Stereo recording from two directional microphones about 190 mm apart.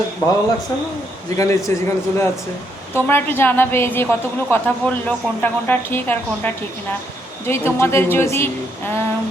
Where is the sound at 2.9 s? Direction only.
10° left (ahead or behind).